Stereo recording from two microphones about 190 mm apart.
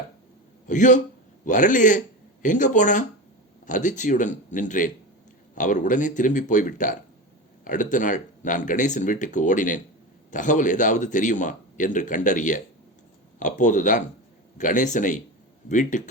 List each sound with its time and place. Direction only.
0.7 s a man's voice: 40° left (ahead or behind)